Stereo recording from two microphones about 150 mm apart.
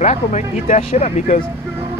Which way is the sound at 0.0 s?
50° left (ahead or behind).